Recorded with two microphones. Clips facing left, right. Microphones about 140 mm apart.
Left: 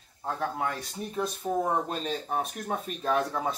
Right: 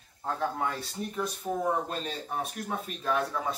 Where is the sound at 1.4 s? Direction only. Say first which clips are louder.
Left 4 dB; 20° left (ahead or behind).